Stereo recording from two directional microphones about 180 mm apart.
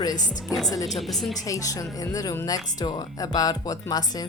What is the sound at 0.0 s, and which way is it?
Speech, 20° left (ahead or behind).